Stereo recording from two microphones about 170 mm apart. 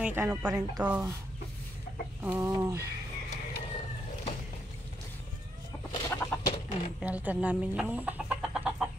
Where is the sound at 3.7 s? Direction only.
40° left (ahead or behind).